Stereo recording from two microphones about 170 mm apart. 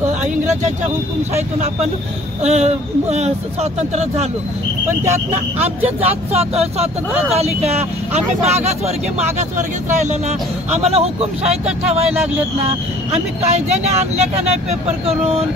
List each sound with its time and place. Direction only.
2.4 s speech: 40° right (ahead or behind)
4.8 s speech: 15° right (ahead or behind)
5.9 s speech: 35° right (ahead or behind)